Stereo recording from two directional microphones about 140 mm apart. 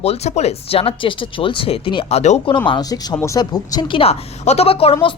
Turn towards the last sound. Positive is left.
turn(degrees=40)  # may be behind; listen again after turning